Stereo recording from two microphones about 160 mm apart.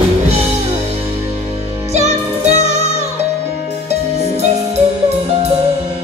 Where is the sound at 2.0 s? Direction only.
45° right (ahead or behind).